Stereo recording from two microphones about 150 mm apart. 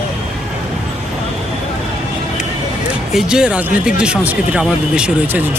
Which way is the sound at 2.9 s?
5° right (ahead or behind).